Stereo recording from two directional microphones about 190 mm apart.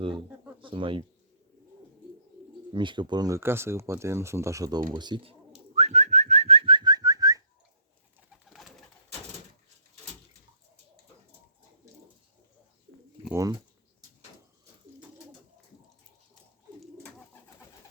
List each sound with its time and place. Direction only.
0.6 s speech: 25° right (ahead or behind)
2.7 s speech: 25° right (ahead or behind)
5.7 s whistling: 35° right (ahead or behind); by 7.4 s 20° right (ahead or behind)
8.3 s pigeon: centre (ahead or behind)
13.3 s speech: 20° right (ahead or behind)
16.8 s pigeon: 5° left (ahead or behind)